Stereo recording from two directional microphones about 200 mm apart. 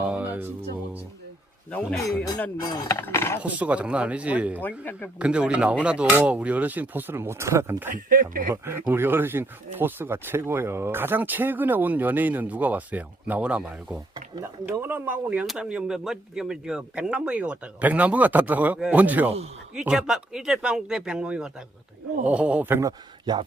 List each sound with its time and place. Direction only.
0.0 s music: 10° right (ahead or behind)
1.7 s speech: 5° left (ahead or behind)
2.4 s speech: 15° left (ahead or behind)
3.4 s speech: 5° right (ahead or behind)
4.8 s speech: 10° left (ahead or behind)
5.2 s speech: 5° right (ahead or behind)
7.9 s speech: 45° right (ahead or behind)
8.6 s speech: 10° right (ahead or behind)